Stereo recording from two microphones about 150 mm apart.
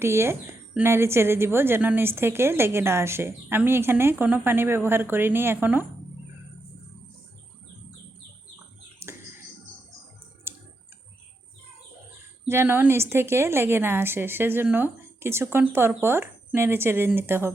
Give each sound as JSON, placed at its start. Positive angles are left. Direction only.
{"t": 0.0, "sound": "speech", "side_deg": -15}
{"t": 9.0, "sound": "bird", "side_deg": -15}
{"t": 10.5, "sound": "clicking", "side_deg": -15}
{"t": 12.5, "sound": "speech", "side_deg": -15}